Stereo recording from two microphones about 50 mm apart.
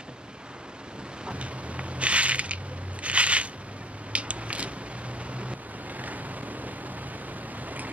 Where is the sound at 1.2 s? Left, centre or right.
Right.